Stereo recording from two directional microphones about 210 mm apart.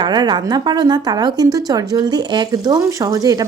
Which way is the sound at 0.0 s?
20° right (ahead or behind).